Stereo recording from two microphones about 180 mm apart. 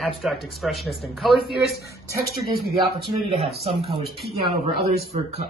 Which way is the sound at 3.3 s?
35° right (ahead or behind).